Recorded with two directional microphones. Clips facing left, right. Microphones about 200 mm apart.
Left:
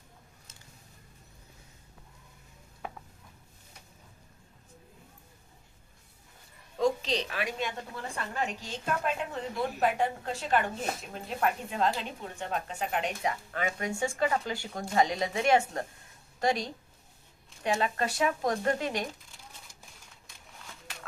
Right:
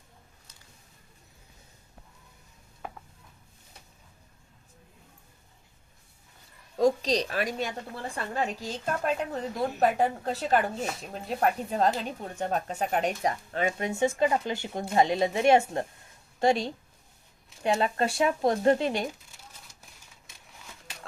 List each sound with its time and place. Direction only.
2.8 s ratchet: centre (ahead or behind)
6.7 s a woman's voice: 40° right (ahead or behind)
13.5 s speech: 25° right (ahead or behind)